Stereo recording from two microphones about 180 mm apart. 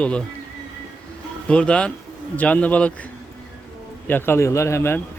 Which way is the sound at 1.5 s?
5° left (ahead or behind).